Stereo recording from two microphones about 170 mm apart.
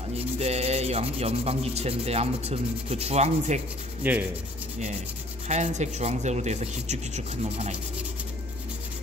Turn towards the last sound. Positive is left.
turn(degrees=-40)  # may be behind; listen again after turning